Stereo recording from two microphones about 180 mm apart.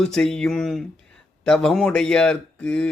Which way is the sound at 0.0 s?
5° left (ahead or behind).